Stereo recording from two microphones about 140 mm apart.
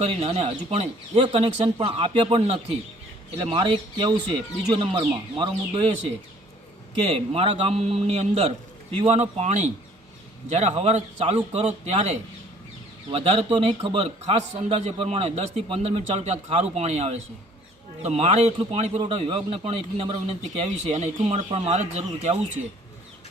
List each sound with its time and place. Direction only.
0.0 s speech: 45° right (ahead or behind)
7.1 s a man's voice: 40° right (ahead or behind)
13.1 s a man's voice: 40° right (ahead or behind)